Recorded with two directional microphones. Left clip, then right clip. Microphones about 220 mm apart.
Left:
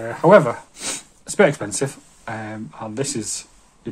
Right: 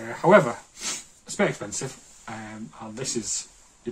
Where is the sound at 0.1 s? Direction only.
45° left (ahead or behind).